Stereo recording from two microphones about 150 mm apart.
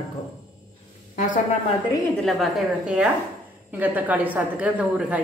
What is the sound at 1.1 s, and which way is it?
Speech, 60° left (ahead or behind).